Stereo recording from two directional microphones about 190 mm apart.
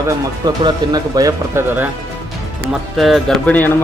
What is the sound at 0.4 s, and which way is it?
Speech, 20° right (ahead or behind).